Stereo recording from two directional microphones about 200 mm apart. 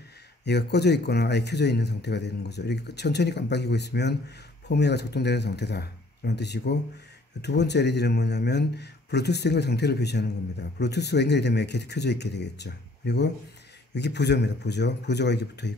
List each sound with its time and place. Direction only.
0.5 s speech: 55° left (ahead or behind)